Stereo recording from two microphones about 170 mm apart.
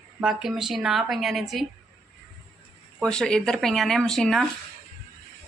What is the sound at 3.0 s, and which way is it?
Speech, 5° left (ahead or behind).